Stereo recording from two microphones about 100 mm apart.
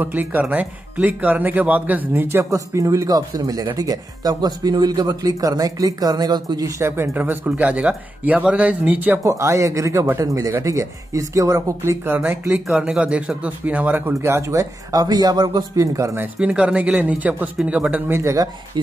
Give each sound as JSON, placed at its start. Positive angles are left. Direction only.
{"t": 0.0, "sound": "speech", "side_deg": -20}
{"t": 6.8, "sound": "speech", "side_deg": -20}
{"t": 9.2, "sound": "speech", "side_deg": -30}
{"t": 12.7, "sound": "speech", "side_deg": -10}
{"t": 16.3, "sound": "speech", "side_deg": -10}